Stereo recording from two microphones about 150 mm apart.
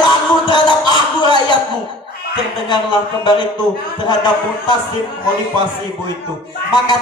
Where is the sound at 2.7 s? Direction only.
30° left (ahead or behind).